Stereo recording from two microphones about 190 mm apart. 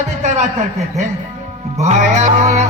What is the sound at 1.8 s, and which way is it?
Music, 35° right (ahead or behind).